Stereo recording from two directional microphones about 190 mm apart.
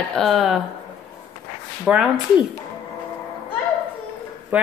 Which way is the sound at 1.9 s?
Centre (ahead or behind).